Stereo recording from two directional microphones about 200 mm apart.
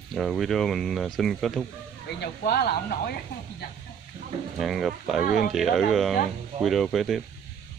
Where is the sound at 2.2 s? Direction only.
50° left (ahead or behind).